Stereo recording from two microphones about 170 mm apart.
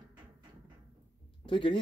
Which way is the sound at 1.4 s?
30° left (ahead or behind).